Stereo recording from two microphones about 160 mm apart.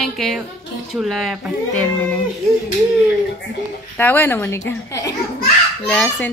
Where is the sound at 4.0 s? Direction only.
10° left (ahead or behind).